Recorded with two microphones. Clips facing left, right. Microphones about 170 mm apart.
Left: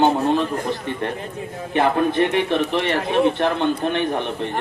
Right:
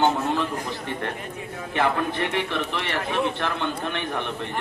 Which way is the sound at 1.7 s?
20° left (ahead or behind).